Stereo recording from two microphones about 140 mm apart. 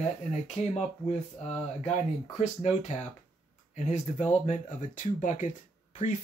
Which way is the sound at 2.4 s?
50° left (ahead or behind).